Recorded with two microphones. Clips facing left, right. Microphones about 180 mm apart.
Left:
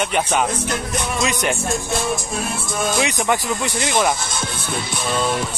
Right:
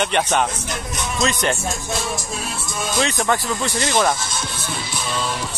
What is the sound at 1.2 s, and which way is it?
Music, 15° left (ahead or behind).